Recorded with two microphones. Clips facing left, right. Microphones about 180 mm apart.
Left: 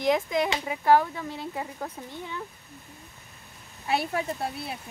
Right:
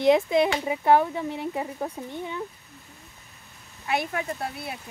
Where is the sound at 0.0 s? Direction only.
25° right (ahead or behind).